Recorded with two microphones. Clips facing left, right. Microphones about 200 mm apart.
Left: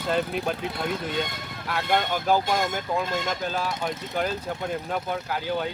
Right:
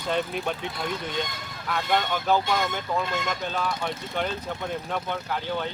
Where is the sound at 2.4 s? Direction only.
45° left (ahead or behind).